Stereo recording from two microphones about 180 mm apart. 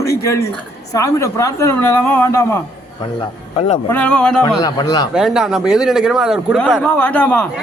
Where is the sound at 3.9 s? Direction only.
10° left (ahead or behind).